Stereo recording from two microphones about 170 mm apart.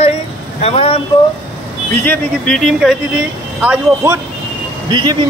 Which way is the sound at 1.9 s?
10° left (ahead or behind).